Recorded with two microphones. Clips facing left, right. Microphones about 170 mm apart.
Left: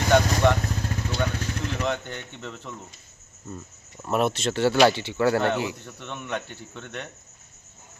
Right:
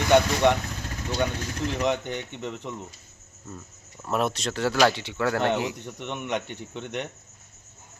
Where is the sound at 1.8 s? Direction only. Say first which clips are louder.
Right 4 dB; 15° right (ahead or behind).